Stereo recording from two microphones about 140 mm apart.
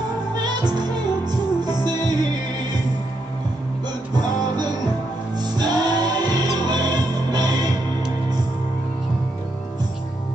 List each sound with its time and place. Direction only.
0.4 s music: 30° right (ahead or behind)
5.4 s music: 30° right (ahead or behind)